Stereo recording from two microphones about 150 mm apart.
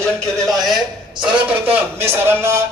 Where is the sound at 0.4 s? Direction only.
Centre (ahead or behind).